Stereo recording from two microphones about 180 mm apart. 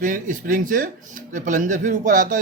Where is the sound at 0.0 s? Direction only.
50° right (ahead or behind).